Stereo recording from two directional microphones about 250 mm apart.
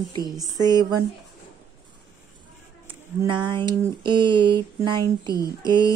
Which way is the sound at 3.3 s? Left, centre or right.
Centre.